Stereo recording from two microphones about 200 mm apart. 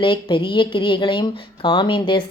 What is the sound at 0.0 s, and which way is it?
A woman's voice, 25° left (ahead or behind).